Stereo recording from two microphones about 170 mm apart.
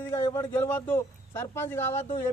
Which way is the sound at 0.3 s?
15° left (ahead or behind).